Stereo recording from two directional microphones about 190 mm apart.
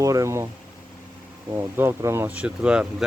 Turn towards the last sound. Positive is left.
turn(degrees=-5)  # may be behind; listen again after turning